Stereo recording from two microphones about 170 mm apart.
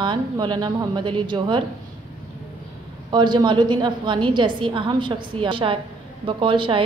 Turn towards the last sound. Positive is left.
turn(degrees=-30)  # may be behind; listen again after turning